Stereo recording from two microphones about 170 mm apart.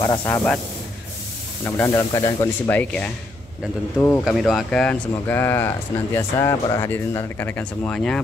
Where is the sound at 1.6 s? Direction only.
15° left (ahead or behind).